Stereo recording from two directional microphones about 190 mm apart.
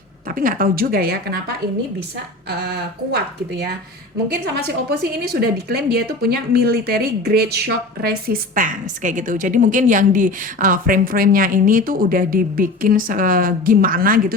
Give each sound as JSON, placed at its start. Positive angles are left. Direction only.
{"t": 0.3, "sound": "a woman's voice", "side_deg": -50}
{"t": 3.1, "sound": "a woman's voice", "side_deg": -60}